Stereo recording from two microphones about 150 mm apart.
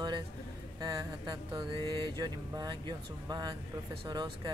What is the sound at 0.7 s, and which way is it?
Mantra, 25° right (ahead or behind).